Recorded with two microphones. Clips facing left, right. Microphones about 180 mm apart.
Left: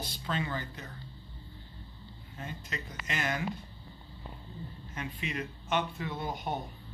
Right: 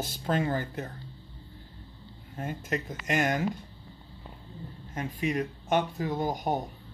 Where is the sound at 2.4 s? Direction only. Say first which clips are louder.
Right 9 dB; 50° right (ahead or behind).